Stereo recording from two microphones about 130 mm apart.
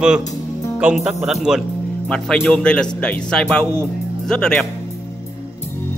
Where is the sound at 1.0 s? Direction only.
5° right (ahead or behind).